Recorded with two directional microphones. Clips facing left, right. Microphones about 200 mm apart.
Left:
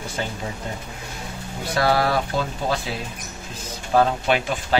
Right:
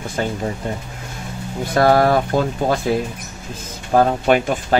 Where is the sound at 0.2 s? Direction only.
50° right (ahead or behind).